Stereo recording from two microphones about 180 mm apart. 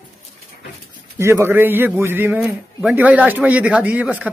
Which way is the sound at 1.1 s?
15° right (ahead or behind).